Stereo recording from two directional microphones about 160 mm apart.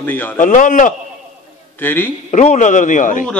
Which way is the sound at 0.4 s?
55° left (ahead or behind).